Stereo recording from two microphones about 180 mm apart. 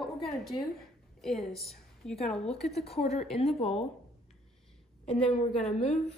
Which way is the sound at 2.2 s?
5° left (ahead or behind).